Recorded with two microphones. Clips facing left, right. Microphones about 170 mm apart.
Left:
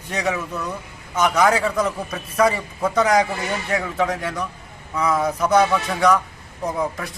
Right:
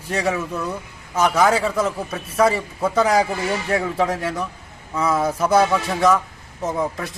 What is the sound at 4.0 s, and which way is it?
A man's voice, 30° right (ahead or behind).